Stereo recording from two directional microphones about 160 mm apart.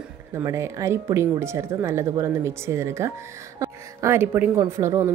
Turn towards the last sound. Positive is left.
turn(degrees=-20)  # may be behind; listen again after turning